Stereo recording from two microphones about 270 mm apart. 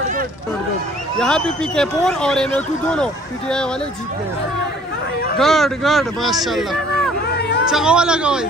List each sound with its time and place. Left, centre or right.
1.2 s speech: centre
5.4 s speech: centre
7.3 s a sound: left
7.7 s speech: centre